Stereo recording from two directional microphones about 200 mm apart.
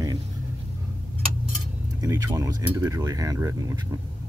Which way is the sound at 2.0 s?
15° right (ahead or behind).